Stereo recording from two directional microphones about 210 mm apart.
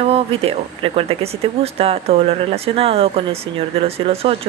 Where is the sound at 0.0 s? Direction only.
30° right (ahead or behind).